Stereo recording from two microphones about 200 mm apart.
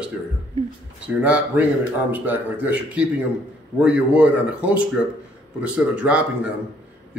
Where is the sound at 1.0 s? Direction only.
5° right (ahead or behind).